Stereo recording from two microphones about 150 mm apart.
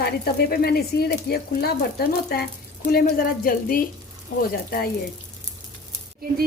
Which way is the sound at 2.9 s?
70° left (ahead or behind).